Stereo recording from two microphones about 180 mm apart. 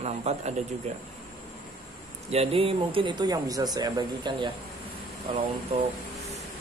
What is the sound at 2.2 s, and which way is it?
Speech, 35° right (ahead or behind).